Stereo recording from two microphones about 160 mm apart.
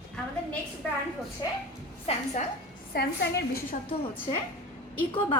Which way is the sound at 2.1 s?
40° left (ahead or behind).